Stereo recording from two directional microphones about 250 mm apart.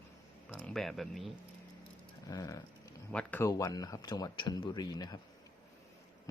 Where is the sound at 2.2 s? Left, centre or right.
Centre.